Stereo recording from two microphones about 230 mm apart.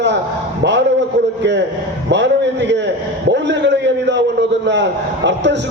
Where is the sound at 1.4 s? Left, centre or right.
Right.